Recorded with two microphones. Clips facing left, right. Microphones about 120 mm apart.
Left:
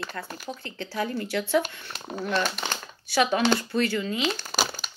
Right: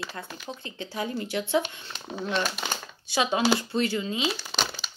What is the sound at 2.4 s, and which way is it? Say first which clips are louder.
Speech: left 1 dB; 5° right (ahead or behind).